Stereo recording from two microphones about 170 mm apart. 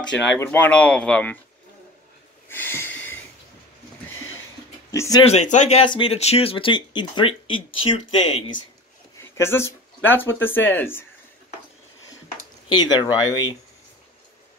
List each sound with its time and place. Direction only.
0.4 s speech: 10° left (ahead or behind)
2.5 s speech: 10° left (ahead or behind)
4.1 s a sound: 15° left (ahead or behind)
4.9 s speech: 20° left (ahead or behind)
5.2 s speech: 40° left (ahead or behind)
5.9 s speech: 30° left (ahead or behind)
9.2 s speech: 15° left (ahead or behind)
12.6 s speech: 25° left (ahead or behind)